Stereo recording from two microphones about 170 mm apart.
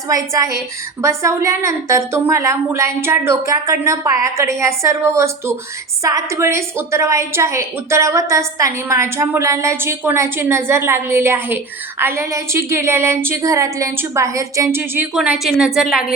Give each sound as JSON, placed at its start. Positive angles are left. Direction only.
{"t": 0.1, "sound": "a woman's voice", "side_deg": -20}